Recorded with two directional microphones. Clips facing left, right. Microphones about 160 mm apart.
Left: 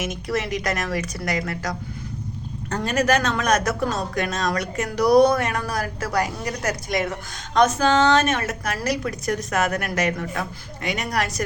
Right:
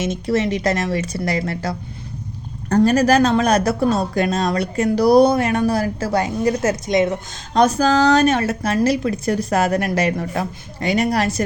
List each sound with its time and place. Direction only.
0.0 s a woman's voice: 25° right (ahead or behind)
7.5 s a woman's voice: 35° right (ahead or behind)